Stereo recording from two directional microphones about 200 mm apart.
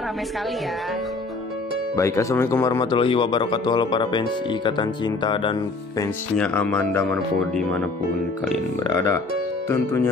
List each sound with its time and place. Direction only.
2.0 s speech: 15° left (ahead or behind)
6.3 s speech: 5° left (ahead or behind)